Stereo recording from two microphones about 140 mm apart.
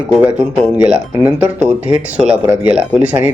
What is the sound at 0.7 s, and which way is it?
A man's voice, 10° right (ahead or behind).